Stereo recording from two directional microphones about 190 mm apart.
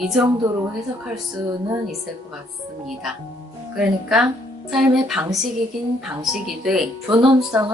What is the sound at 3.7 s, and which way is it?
A woman's voice, centre (ahead or behind).